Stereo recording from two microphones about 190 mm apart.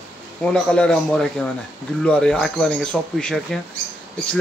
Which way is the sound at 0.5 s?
5° left (ahead or behind).